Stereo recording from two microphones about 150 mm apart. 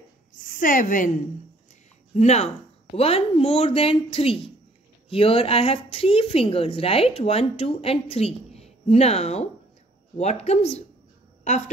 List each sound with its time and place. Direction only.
0.4 s a woman's voice: 65° left (ahead or behind)
2.1 s a woman's voice: 50° left (ahead or behind)